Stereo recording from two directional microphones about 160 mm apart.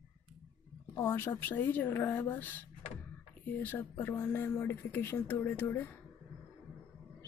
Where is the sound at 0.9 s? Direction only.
15° left (ahead or behind).